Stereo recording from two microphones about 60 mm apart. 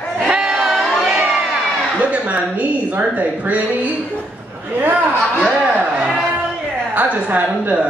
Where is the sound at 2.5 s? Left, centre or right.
Right.